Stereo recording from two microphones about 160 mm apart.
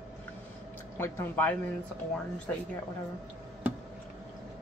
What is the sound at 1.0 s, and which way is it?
Speech, 10° left (ahead or behind).